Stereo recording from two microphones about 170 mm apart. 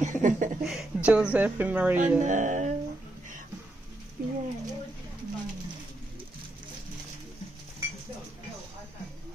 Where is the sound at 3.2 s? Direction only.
50° right (ahead or behind).